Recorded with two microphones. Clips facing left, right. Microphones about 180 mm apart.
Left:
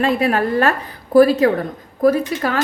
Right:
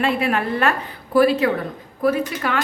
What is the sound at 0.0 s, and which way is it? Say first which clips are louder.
A woman's voice: left 3 dB; 40° left (ahead or behind).